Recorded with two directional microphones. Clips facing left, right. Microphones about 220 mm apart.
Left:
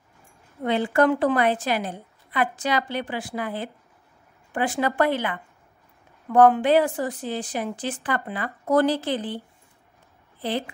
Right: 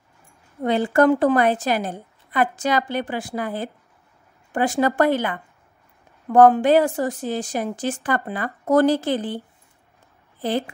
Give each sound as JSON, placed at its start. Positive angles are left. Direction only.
{"t": 0.7, "sound": "a woman's voice", "side_deg": -40}